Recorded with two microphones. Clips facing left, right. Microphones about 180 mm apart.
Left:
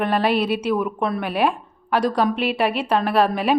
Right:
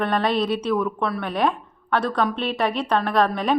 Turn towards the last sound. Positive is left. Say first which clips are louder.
# left 2 dB
turn(degrees=10)  # may be behind; listen again after turning